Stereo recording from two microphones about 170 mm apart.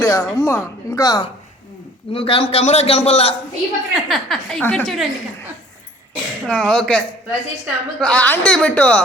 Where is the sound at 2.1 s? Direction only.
30° left (ahead or behind).